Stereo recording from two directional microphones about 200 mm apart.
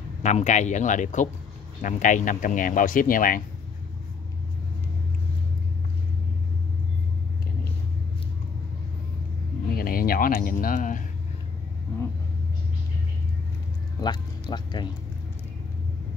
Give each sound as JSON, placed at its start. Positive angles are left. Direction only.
{"t": 0.2, "sound": "speech", "side_deg": 35}
{"t": 9.7, "sound": "a sound", "side_deg": 50}
{"t": 14.0, "sound": "speech", "side_deg": 20}